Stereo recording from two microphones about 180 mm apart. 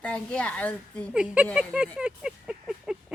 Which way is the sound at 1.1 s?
5° right (ahead or behind).